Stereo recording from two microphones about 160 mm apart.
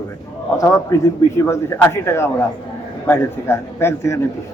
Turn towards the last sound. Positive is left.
turn(degrees=15)  # may be behind; listen again after turning